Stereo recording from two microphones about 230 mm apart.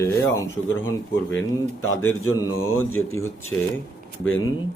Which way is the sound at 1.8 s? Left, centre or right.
Left.